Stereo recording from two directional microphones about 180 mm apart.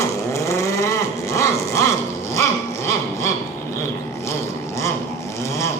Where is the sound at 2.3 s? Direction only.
15° left (ahead or behind).